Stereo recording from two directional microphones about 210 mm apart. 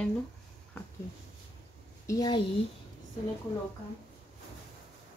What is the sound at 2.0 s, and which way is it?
Speech, 15° left (ahead or behind).